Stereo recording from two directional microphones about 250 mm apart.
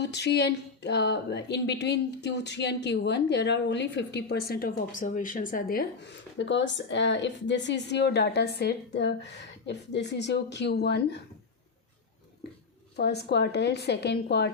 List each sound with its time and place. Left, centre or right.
0.0 s speech: left
13.0 s a woman's voice: left